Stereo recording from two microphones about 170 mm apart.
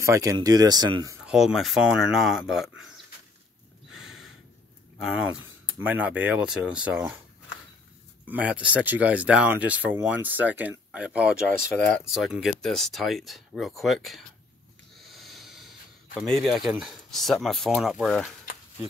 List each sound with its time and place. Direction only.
0.0 s speech: 20° right (ahead or behind)
1.2 s speech: centre (ahead or behind)
3.9 s snort: centre (ahead or behind)
4.9 s a sound: centre (ahead or behind)
5.8 s speech: 10° right (ahead or behind)
8.3 s speech: 10° right (ahead or behind)
11.8 s speech: 10° left (ahead or behind)
15.0 s snort: centre (ahead or behind)
16.4 s speech: centre (ahead or behind)